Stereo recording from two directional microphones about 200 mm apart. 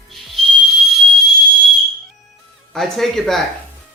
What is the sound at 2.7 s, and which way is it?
Speech, centre (ahead or behind).